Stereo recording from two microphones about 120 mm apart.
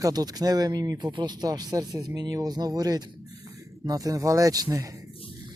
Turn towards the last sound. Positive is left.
turn(degrees=-30)  # may be behind; listen again after turning